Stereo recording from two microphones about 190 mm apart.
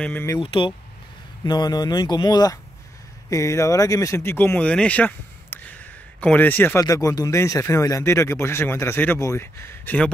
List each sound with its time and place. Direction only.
0.0 s speech: 10° left (ahead or behind)
0.4 s speech: 25° left (ahead or behind); by 10.1 s 10° left (ahead or behind)